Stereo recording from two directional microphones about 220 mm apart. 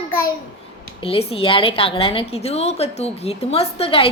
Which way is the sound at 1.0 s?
25° left (ahead or behind).